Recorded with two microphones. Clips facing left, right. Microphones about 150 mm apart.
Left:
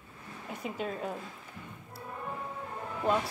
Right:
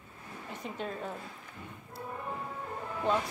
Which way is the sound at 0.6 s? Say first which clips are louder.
Left 3 dB; 10° left (ahead or behind).